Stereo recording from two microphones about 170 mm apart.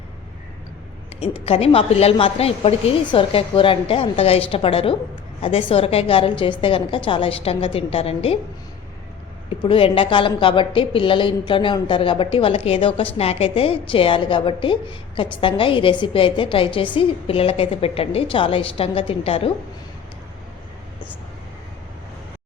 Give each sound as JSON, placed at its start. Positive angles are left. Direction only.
{"t": 1.2, "sound": "a woman's voice", "side_deg": 35}
{"t": 9.6, "sound": "a woman's voice", "side_deg": 30}